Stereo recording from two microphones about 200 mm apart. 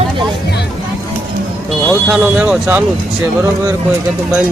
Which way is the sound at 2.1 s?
5° right (ahead or behind).